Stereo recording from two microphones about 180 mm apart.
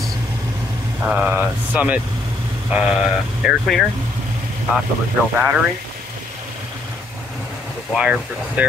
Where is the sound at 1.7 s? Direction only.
10° right (ahead or behind).